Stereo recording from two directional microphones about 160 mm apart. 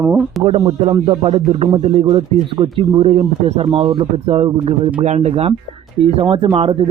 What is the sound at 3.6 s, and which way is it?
Speech, 30° right (ahead or behind).